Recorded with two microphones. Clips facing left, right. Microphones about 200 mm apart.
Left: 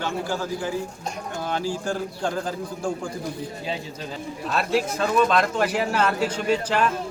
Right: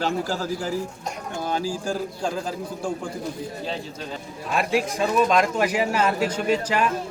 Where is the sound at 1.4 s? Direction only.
10° right (ahead or behind).